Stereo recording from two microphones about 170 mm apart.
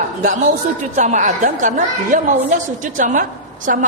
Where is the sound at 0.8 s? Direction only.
45° right (ahead or behind).